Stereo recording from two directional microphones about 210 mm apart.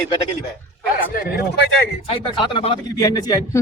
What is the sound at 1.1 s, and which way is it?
Speech, 45° left (ahead or behind).